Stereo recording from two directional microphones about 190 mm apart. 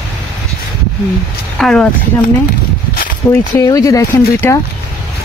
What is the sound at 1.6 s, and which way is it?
Speech, 5° left (ahead or behind).